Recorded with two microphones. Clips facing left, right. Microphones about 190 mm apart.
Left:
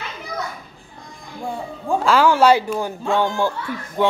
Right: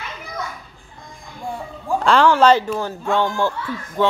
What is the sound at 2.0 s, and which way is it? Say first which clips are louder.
Speech: right 1 dB; 10° left (ahead or behind).